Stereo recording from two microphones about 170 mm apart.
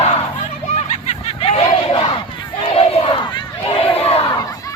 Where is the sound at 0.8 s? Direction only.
40° left (ahead or behind).